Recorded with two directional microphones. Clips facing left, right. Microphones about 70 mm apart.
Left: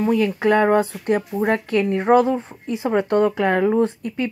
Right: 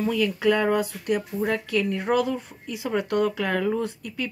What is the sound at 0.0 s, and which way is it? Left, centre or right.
Speech, left.